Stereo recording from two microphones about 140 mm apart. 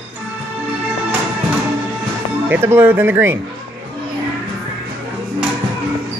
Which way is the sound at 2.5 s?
15° right (ahead or behind).